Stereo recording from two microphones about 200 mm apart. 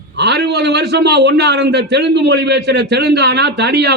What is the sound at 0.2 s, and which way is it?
A man's voice, 60° right (ahead or behind).